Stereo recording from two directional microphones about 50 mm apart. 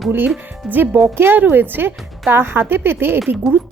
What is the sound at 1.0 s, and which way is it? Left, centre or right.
Speech, right.